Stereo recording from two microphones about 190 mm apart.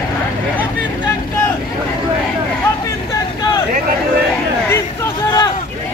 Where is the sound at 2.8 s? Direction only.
20° left (ahead or behind).